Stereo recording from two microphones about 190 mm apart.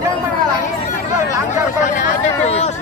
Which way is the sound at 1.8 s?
35° left (ahead or behind).